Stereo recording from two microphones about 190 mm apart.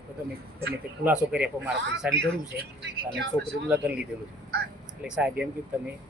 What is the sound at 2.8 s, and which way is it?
Speech, 70° right (ahead or behind).